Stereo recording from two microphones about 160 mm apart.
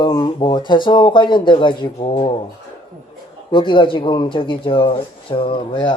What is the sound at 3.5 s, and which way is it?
Speech, 30° left (ahead or behind).